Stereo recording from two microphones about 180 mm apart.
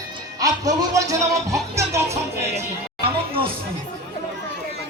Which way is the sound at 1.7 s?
15° right (ahead or behind).